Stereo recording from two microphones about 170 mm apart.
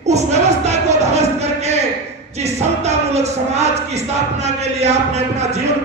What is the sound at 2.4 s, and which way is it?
Speech, 40° right (ahead or behind).